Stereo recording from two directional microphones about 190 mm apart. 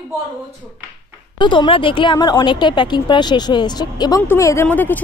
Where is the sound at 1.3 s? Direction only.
25° left (ahead or behind).